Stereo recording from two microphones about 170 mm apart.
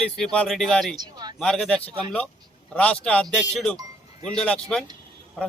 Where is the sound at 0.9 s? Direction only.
25° right (ahead or behind).